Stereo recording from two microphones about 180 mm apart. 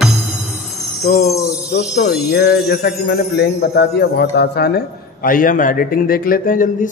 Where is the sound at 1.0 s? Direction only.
50° left (ahead or behind).